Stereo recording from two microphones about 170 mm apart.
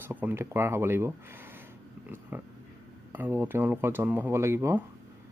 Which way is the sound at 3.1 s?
10° right (ahead or behind).